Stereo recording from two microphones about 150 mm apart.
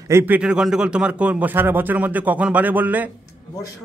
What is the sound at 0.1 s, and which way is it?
A man's voice, 10° right (ahead or behind).